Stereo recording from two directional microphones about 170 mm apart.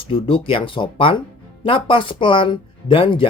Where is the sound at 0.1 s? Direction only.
30° left (ahead or behind).